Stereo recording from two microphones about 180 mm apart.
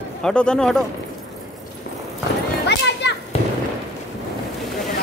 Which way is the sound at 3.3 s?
35° left (ahead or behind).